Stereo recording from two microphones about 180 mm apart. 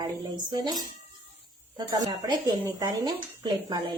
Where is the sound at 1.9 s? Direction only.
20° right (ahead or behind).